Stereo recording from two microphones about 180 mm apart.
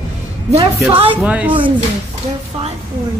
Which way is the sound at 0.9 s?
30° right (ahead or behind).